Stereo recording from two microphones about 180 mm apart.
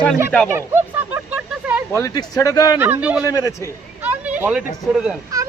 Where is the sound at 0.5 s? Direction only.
15° right (ahead or behind).